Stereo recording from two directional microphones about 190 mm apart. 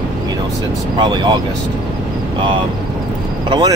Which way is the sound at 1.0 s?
25° right (ahead or behind).